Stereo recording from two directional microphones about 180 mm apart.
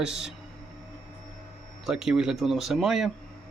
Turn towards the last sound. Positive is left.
turn(degrees=0)  # may be behind; listen again after turning